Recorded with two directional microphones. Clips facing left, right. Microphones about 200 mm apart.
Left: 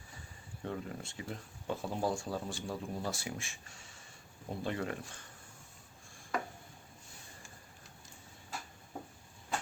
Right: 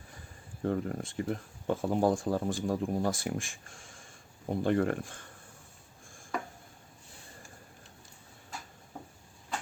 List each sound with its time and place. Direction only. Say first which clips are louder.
0.6 s speech: right 9 dB; 50° right (ahead or behind)